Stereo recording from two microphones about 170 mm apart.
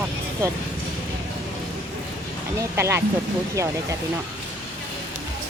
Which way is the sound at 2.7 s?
15° right (ahead or behind).